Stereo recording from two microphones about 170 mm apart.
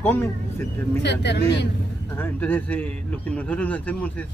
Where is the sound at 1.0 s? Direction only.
90° left.